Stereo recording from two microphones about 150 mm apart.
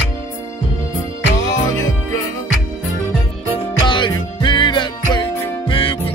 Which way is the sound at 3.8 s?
30° left (ahead or behind).